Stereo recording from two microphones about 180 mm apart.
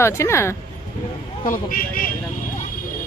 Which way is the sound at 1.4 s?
50° left (ahead or behind).